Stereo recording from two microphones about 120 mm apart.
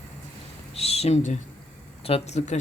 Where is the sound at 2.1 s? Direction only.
60° left (ahead or behind).